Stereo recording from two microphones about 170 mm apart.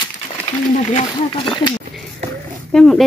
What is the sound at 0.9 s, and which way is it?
Speech, 30° left (ahead or behind).